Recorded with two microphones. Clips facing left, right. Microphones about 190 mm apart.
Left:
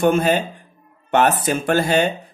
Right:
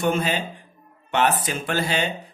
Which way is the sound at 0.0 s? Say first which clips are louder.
Left 6 dB; 50° left (ahead or behind).